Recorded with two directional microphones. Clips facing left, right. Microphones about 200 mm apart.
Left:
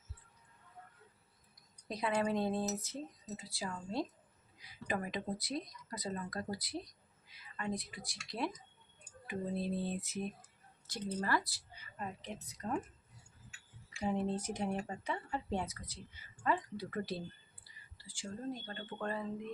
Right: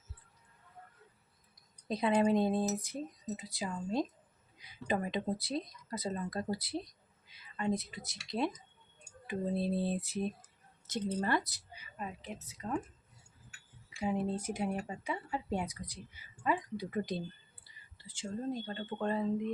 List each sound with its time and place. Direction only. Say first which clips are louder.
1.9 s speech: right 6 dB; 25° right (ahead or behind)
10.8 s a woman's voice: right 4 dB; 20° right (ahead or behind); by 12.8 s centre (ahead or behind)
14.0 s speech: right 1 dB; 10° right (ahead or behind)